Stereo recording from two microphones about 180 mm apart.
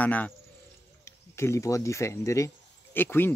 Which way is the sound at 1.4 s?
15° left (ahead or behind).